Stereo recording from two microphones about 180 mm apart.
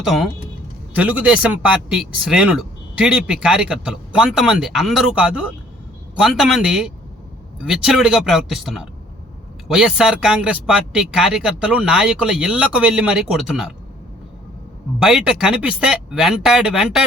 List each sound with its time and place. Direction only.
0.0 s speech: centre (ahead or behind)
14.9 s speech: 5° right (ahead or behind)